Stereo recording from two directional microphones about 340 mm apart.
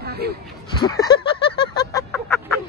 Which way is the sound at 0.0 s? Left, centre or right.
Right.